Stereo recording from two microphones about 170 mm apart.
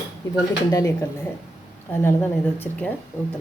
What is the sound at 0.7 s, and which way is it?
A woman's voice, 20° left (ahead or behind).